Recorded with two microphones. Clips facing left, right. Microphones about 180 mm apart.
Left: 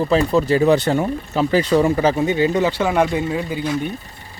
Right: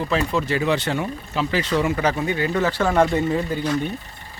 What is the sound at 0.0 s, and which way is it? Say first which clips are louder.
Speech: left 6 dB; 35° left (ahead or behind).